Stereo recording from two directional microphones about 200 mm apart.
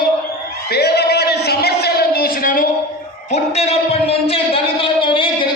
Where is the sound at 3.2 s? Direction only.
35° left (ahead or behind).